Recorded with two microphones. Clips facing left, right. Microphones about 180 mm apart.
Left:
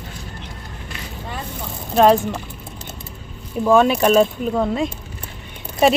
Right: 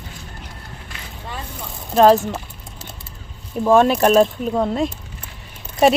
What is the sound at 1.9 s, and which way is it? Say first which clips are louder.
Speech: right 1 dB; centre (ahead or behind).